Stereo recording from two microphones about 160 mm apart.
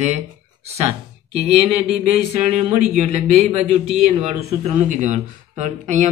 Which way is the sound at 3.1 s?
40° right (ahead or behind).